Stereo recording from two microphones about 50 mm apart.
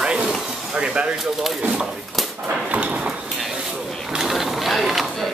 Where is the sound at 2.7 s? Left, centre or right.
Right.